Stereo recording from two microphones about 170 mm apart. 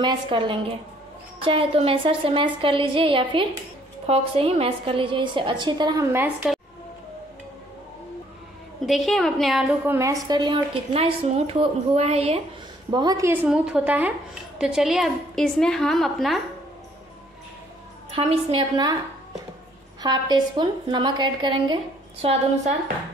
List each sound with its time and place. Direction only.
0.0 s a woman's voice: 25° right (ahead or behind)
6.1 s a woman's voice: 5° right (ahead or behind)
8.8 s a woman's voice: centre (ahead or behind)
9.9 s a woman's voice: 20° right (ahead or behind); by 12.4 s 35° right (ahead or behind)
12.9 s a woman's voice: 20° right (ahead or behind); by 16.3 s centre (ahead or behind)
18.1 s a woman's voice: 30° right (ahead or behind)
20.0 s a woman's voice: 25° right (ahead or behind)